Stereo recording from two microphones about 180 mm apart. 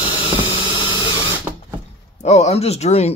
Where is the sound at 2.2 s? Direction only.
40° left (ahead or behind).